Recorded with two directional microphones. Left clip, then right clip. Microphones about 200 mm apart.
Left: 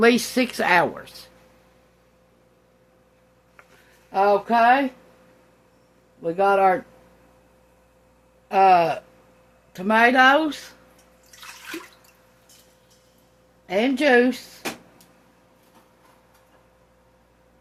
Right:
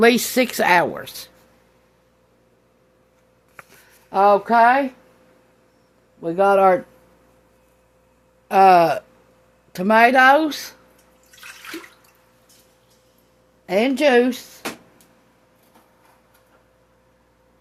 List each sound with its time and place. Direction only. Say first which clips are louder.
0.0 s speech: right 3 dB; 40° right (ahead or behind)
4.1 s speech: right 4 dB; 50° right (ahead or behind)
6.2 s speech: right 3 dB; 45° right (ahead or behind)
8.4 s a sound: right 4 dB; 60° right (ahead or behind)
9.7 s speech: right 3 dB; 50° right (ahead or behind)
13.7 s speech: right 2 dB; 50° right (ahead or behind)